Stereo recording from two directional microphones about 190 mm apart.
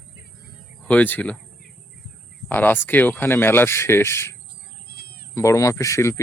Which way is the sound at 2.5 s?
10° left (ahead or behind).